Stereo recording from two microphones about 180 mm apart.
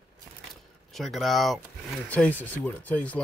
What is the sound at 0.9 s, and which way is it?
Speech, centre (ahead or behind).